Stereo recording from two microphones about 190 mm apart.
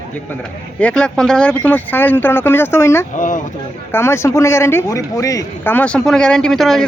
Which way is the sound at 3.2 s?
40° left (ahead or behind).